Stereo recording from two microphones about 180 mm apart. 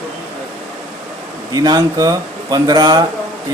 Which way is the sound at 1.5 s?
20° right (ahead or behind).